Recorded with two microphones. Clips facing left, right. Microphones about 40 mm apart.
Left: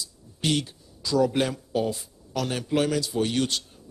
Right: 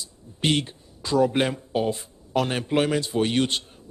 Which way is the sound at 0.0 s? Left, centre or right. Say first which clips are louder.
Right 3 dB; right.